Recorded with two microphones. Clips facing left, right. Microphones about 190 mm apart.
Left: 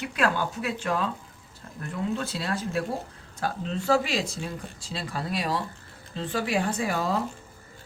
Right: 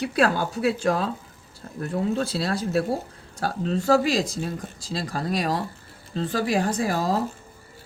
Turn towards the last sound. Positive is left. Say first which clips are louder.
# right 3 dB
turn(degrees=-40)  # may be behind; listen again after turning